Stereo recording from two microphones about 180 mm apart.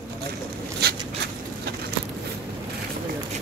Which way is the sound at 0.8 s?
60° right (ahead or behind).